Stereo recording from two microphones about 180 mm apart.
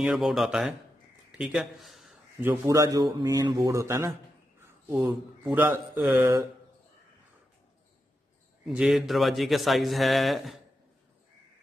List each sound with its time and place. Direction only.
0.0 s a man's voice: centre (ahead or behind)
2.4 s a man's voice: 15° right (ahead or behind)
8.6 s a man's voice: 5° right (ahead or behind)